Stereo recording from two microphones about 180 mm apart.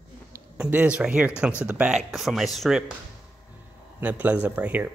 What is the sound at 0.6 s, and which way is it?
A man's voice, 5° right (ahead or behind).